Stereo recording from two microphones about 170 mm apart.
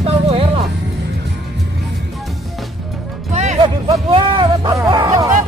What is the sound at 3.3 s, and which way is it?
Music, 40° right (ahead or behind).